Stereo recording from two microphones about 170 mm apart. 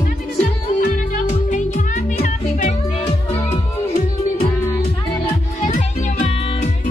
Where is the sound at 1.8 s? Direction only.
50° left (ahead or behind).